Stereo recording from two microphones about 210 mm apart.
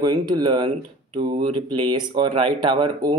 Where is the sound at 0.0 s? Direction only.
20° right (ahead or behind).